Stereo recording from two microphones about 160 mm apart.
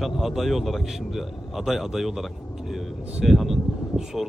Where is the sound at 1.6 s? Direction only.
Centre (ahead or behind).